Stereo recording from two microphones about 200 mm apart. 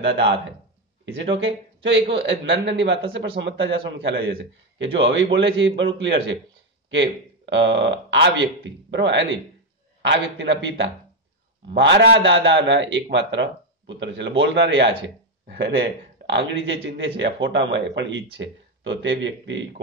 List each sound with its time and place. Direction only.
0.0 s a man's voice: 60° right (ahead or behind)